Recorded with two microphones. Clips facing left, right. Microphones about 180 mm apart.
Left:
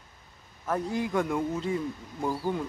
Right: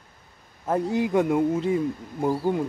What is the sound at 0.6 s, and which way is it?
Speech, 25° right (ahead or behind).